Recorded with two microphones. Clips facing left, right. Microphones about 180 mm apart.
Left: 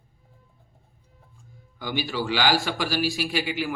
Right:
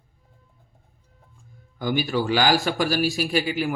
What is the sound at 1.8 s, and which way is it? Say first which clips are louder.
Speech: right 5 dB; 45° right (ahead or behind).